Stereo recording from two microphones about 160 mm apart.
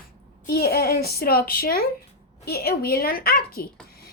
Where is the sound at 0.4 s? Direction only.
75° left (ahead or behind).